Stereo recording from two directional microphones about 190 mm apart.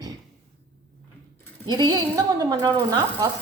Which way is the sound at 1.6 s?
20° right (ahead or behind).